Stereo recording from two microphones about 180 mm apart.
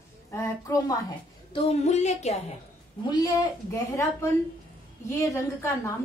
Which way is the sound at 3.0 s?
25° left (ahead or behind).